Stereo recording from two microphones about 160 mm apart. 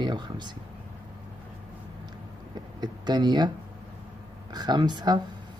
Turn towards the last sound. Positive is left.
turn(degrees=-25)  # may be behind; listen again after turning